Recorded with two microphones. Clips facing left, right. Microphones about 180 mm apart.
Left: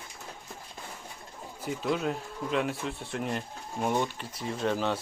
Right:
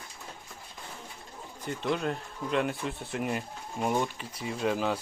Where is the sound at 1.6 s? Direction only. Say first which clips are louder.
Left 1 dB; 5° left (ahead or behind).